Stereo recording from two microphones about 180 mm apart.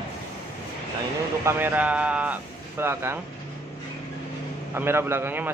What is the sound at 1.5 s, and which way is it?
A man's voice, 10° right (ahead or behind).